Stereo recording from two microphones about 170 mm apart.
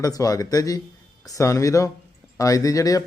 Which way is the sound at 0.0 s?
20° left (ahead or behind).